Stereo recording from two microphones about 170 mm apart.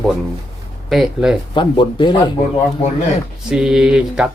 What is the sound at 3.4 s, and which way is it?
Speech, 5° right (ahead or behind).